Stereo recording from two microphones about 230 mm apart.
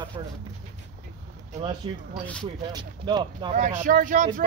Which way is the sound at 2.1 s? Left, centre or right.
Centre.